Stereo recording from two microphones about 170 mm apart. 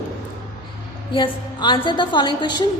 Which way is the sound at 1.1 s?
25° left (ahead or behind).